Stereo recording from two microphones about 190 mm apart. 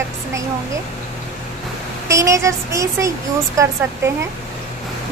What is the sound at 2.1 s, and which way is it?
A woman's voice, 15° right (ahead or behind).